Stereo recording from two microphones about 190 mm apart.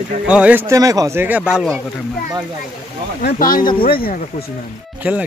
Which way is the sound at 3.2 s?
50° left (ahead or behind).